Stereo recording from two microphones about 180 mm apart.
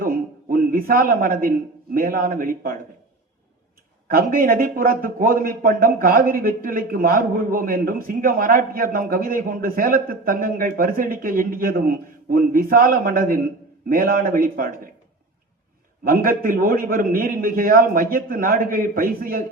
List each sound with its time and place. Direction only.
0.0 s a man's voice: 50° right (ahead or behind)
4.1 s a man's voice: 50° right (ahead or behind)
16.0 s a man's voice: 50° right (ahead or behind)